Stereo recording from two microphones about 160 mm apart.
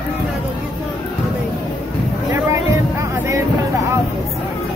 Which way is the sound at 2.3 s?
20° right (ahead or behind).